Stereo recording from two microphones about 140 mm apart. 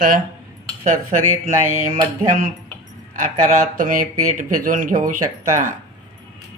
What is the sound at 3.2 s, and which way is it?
Speech, 70° right (ahead or behind).